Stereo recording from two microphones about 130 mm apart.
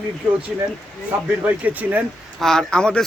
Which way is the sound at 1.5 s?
10° right (ahead or behind).